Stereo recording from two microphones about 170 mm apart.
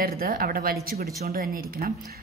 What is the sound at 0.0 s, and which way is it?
A woman's voice, 60° right (ahead or behind).